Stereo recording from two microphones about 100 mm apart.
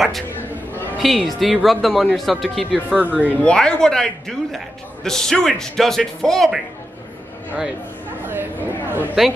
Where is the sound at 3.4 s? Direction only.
10° left (ahead or behind).